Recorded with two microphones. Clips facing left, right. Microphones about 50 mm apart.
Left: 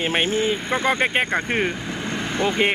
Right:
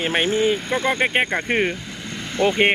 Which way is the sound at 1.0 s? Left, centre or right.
Centre.